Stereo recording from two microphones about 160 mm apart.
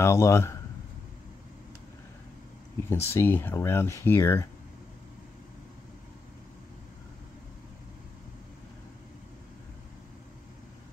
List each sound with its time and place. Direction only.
0.0 s speech: 15° left (ahead or behind)
2.9 s speech: 15° left (ahead or behind)